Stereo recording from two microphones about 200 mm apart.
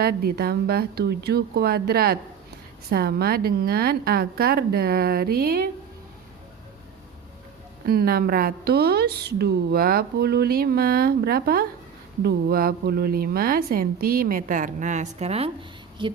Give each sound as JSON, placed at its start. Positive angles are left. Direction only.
{"t": 0.0, "sound": "a woman's voice", "side_deg": -50}
{"t": 7.9, "sound": "a woman's voice", "side_deg": -50}